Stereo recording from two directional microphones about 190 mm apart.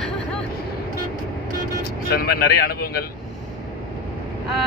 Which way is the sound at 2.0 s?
55° left (ahead or behind).